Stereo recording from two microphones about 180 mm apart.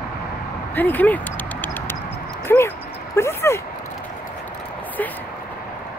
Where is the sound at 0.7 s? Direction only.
10° left (ahead or behind).